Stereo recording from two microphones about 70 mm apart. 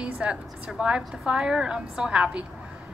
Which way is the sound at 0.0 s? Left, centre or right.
Centre.